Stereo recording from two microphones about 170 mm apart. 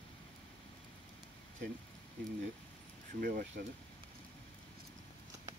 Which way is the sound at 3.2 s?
55° right (ahead or behind).